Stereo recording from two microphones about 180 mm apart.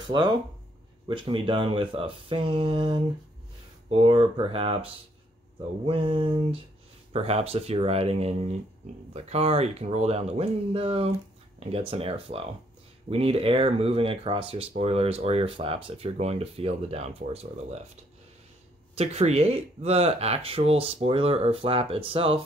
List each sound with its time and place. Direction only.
0.0 s speech: 25° right (ahead or behind)
18.9 s speech: 35° right (ahead or behind)